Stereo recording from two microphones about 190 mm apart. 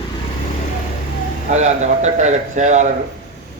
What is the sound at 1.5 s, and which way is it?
A man's voice, 35° right (ahead or behind).